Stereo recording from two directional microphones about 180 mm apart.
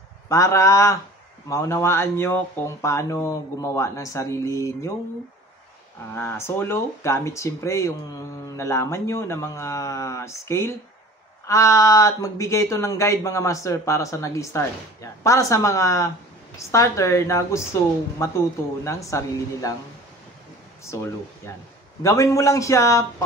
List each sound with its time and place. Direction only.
0.3 s speech: 20° left (ahead or behind)
6.1 s speech: 15° left (ahead or behind)
18.9 s speech: 15° left (ahead or behind)
20.9 s speech: 15° left (ahead or behind)